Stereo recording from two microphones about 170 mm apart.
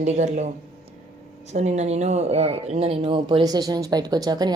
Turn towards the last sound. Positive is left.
turn(degrees=-25)  # may be behind; listen again after turning